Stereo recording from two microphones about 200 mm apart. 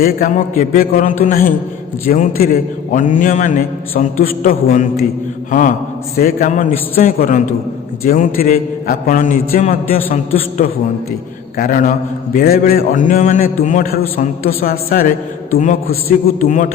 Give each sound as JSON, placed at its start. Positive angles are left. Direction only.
{"t": 0.0, "sound": "a man's voice", "side_deg": 45}